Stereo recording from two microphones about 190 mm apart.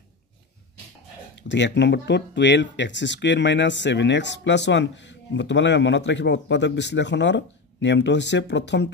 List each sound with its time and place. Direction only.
1.3 s speech: 70° left (ahead or behind)